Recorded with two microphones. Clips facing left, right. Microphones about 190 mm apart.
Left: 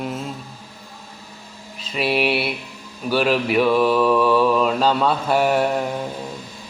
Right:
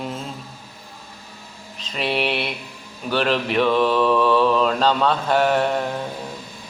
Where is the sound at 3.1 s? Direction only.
10° left (ahead or behind).